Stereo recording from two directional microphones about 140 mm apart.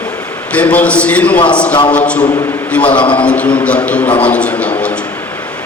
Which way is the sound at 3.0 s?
40° left (ahead or behind).